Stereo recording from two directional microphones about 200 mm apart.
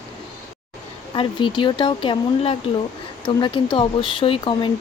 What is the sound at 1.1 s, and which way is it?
Speech, 25° left (ahead or behind).